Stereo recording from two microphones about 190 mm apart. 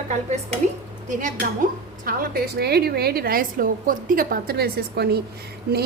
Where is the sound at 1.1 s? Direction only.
40° right (ahead or behind).